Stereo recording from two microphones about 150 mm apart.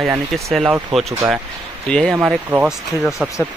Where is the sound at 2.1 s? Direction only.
10° right (ahead or behind).